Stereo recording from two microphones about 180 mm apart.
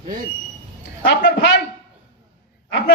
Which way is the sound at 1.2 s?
75° left (ahead or behind).